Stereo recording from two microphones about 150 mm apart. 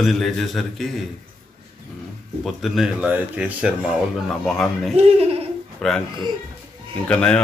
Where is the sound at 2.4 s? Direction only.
Centre (ahead or behind).